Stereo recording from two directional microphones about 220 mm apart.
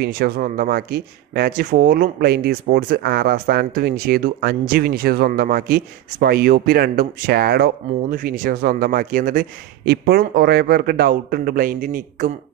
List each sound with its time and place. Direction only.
0.0 s speech: 40° right (ahead or behind)